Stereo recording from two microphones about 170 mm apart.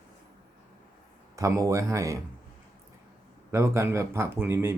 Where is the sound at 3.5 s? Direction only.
15° right (ahead or behind).